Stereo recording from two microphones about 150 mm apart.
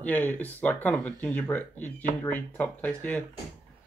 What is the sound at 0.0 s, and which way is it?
Speech, 10° left (ahead or behind).